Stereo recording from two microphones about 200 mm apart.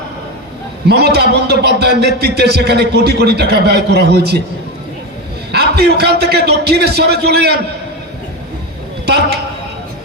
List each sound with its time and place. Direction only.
0.9 s a man's voice: 55° right (ahead or behind)
5.5 s a man's voice: 55° right (ahead or behind)